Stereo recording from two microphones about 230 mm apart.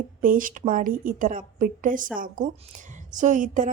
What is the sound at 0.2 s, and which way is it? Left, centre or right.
A woman's voice, right.